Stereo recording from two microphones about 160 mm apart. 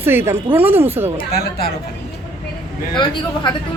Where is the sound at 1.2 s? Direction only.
75° left (ahead or behind).